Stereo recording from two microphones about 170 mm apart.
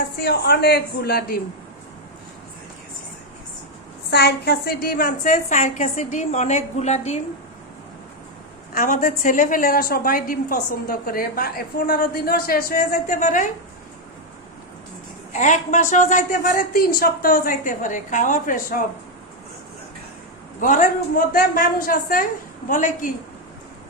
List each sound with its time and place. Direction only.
0.2 s a woman's voice: 70° left (ahead or behind)
4.1 s a woman's voice: 70° left (ahead or behind); by 7.2 s 40° left (ahead or behind)
8.7 s a woman's voice: 55° left (ahead or behind)
15.3 s a woman's voice: 45° left (ahead or behind)
20.6 s a woman's voice: 50° left (ahead or behind)